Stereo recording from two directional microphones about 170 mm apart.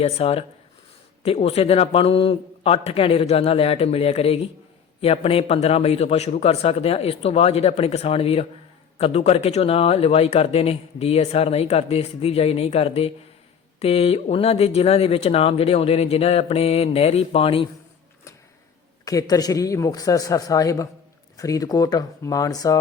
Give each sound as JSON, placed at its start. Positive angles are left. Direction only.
{"t": 0.0, "sound": "speech", "side_deg": 35}
{"t": 19.0, "sound": "a man's voice", "side_deg": 20}